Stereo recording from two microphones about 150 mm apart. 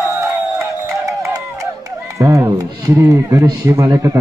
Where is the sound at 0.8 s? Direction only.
20° right (ahead or behind).